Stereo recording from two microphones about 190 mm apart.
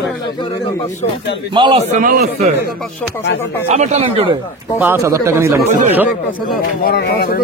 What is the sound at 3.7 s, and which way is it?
Speech, 35° right (ahead or behind).